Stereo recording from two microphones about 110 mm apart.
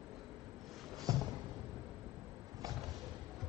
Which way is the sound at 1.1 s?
35° right (ahead or behind).